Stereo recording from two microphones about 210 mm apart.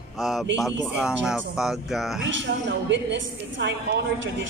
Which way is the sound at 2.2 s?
60° right (ahead or behind).